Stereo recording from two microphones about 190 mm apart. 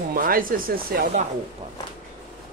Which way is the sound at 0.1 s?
50° right (ahead or behind).